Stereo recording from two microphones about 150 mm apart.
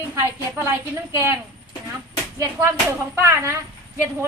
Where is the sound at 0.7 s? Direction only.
20° right (ahead or behind).